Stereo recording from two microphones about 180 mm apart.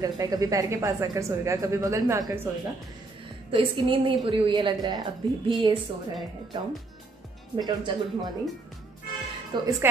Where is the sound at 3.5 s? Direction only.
30° right (ahead or behind).